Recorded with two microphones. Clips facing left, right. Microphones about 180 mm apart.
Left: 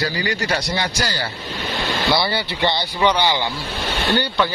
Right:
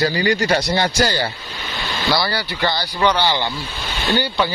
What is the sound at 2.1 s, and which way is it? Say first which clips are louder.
Speech: right 2 dB; 20° left (ahead or behind).